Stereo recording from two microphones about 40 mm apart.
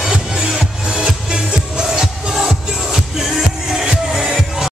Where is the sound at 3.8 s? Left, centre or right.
Centre.